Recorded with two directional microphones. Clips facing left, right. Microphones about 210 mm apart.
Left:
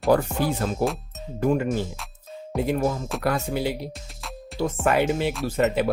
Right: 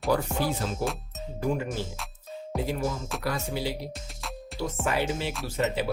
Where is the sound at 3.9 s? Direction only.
Centre (ahead or behind).